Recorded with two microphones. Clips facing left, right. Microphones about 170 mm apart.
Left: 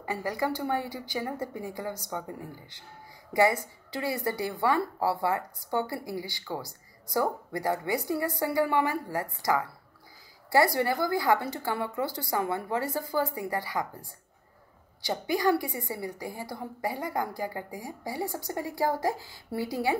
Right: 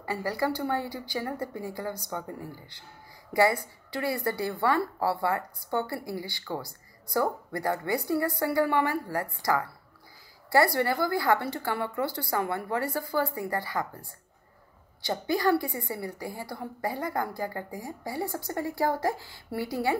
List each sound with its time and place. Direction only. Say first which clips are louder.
0.0 s a woman's voice: right 1 dB; 15° left (ahead or behind)
3.9 s a woman's voice: right 1 dB; 15° left (ahead or behind)
15.0 s a woman's voice: even; 15° left (ahead or behind)